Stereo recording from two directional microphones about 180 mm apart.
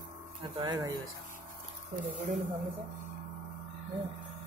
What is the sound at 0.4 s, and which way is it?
Speech, 20° right (ahead or behind).